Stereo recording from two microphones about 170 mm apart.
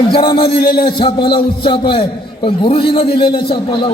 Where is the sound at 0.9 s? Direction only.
30° left (ahead or behind).